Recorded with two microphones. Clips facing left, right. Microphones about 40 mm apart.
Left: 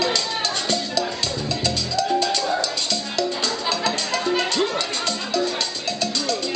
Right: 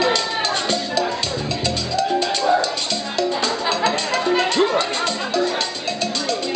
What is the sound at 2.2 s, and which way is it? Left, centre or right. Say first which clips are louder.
Music: right 4 dB; centre.